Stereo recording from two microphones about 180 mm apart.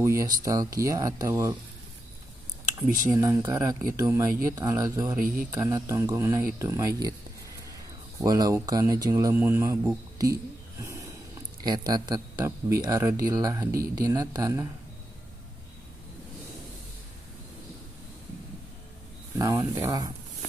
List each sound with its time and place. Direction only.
0.0 s speech: 15° right (ahead or behind)
3.1 s speech: 15° right (ahead or behind)
8.2 s speech: 20° right (ahead or behind)
19.3 s speech: 20° right (ahead or behind)